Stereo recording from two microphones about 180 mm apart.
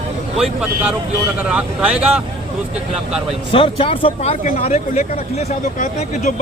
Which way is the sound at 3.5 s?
30° left (ahead or behind).